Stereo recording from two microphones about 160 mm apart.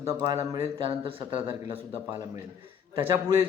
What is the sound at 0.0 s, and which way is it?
Speech, 20° right (ahead or behind).